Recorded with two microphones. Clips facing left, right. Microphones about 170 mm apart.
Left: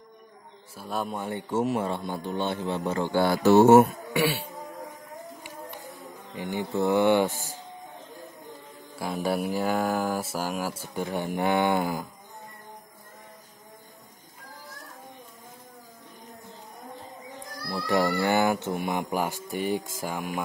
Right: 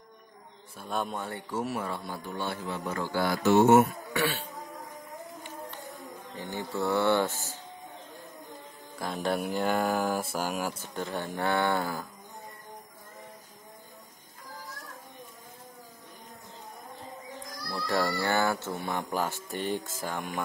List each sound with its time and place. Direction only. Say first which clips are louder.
0.7 s a man's voice: left 1 dB; 5° left (ahead or behind)
1.2 s a man's voice: left 6 dB; 20° left (ahead or behind)
4.1 s insect: left 4 dB; 10° left (ahead or behind)
6.3 s speech: left 5 dB; 15° left (ahead or behind)
8.9 s speech: left 2 dB; 5° left (ahead or behind)
17.8 s speech: left 4 dB; 15° left (ahead or behind)